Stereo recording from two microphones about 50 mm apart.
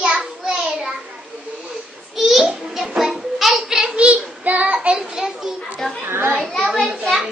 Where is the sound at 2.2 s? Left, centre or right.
Centre.